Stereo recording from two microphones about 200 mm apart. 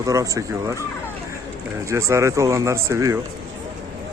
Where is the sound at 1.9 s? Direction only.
15° right (ahead or behind).